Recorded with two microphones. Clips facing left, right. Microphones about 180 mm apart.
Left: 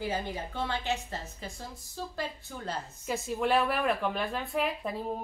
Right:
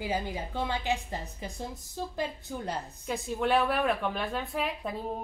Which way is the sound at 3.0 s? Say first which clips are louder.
Even; centre (ahead or behind).